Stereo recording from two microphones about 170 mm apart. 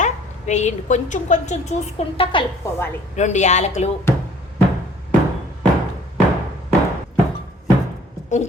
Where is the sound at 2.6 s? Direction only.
15° left (ahead or behind).